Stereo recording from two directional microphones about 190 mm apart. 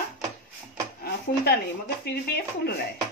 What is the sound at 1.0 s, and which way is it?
Speech, 55° left (ahead or behind).